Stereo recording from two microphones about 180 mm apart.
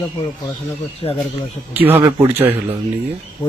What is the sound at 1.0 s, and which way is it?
Speech, 30° left (ahead or behind).